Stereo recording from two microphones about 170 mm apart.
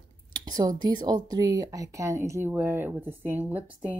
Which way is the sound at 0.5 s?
25° right (ahead or behind).